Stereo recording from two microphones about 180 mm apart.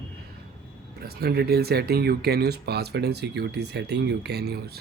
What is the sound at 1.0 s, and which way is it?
Speech, 60° right (ahead or behind).